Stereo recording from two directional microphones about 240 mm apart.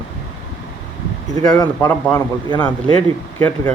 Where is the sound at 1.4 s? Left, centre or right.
Centre.